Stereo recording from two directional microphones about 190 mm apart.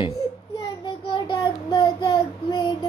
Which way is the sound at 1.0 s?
25° left (ahead or behind).